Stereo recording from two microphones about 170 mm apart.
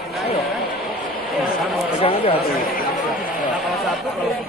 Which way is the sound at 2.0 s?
35° left (ahead or behind).